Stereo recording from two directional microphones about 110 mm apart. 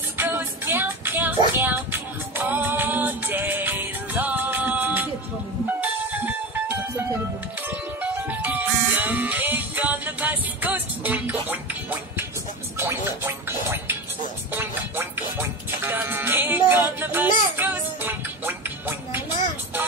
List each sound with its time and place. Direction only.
0.2 s music: 20° right (ahead or behind)